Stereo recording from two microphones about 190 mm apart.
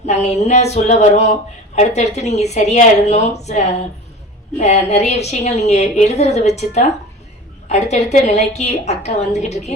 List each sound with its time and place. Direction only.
0.0 s speech: 35° left (ahead or behind)